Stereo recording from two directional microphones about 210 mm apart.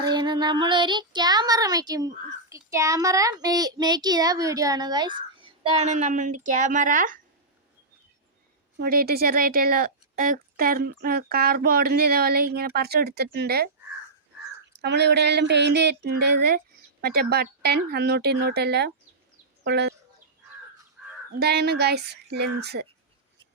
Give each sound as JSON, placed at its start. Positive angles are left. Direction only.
{"t": 0.0, "sound": "speech", "side_deg": -20}
{"t": 8.8, "sound": "a woman's voice", "side_deg": -45}
{"t": 14.7, "sound": "a woman's voice", "side_deg": -55}
{"t": 21.0, "sound": "crow", "side_deg": 0}
{"t": 21.3, "sound": "a woman's voice", "side_deg": -50}